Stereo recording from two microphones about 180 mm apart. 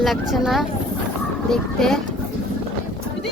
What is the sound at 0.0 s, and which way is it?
A child's voice, centre (ahead or behind).